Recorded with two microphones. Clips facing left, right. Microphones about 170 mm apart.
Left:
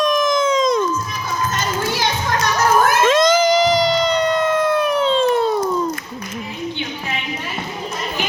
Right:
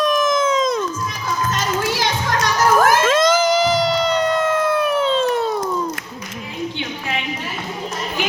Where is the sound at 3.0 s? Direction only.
5° right (ahead or behind).